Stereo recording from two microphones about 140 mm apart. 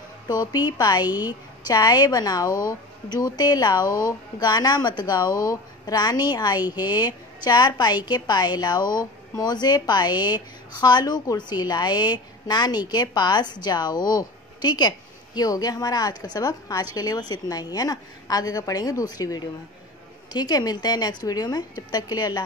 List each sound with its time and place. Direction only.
0.3 s a woman's voice: 30° left (ahead or behind)